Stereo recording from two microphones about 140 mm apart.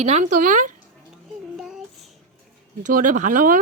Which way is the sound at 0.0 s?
50° right (ahead or behind).